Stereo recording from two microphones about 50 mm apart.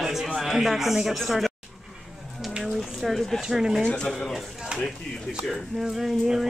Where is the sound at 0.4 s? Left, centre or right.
Centre.